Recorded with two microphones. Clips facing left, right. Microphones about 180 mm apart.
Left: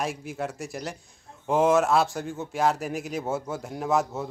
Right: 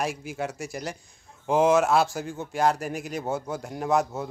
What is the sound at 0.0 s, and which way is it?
Speech, centre (ahead or behind).